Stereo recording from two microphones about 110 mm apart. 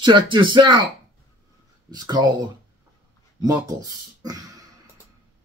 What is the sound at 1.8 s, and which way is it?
Speech, 40° right (ahead or behind).